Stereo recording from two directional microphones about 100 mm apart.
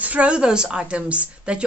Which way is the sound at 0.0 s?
15° right (ahead or behind).